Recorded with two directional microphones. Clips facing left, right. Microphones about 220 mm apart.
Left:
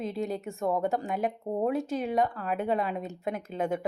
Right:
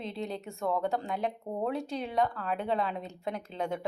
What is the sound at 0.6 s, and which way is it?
Speech, 15° left (ahead or behind).